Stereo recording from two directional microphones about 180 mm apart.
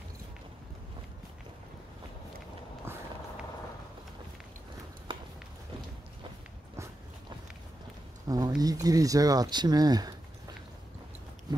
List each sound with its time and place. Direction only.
8.3 s speech: 20° right (ahead or behind)